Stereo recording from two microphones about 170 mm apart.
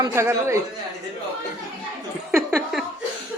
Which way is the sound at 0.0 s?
15° right (ahead or behind).